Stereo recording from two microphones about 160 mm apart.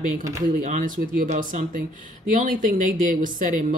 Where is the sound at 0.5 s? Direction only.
55° right (ahead or behind).